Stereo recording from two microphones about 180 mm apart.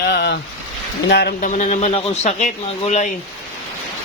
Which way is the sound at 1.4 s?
40° left (ahead or behind).